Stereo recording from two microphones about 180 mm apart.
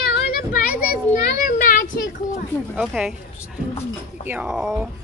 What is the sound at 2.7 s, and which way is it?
Speech, 5° right (ahead or behind).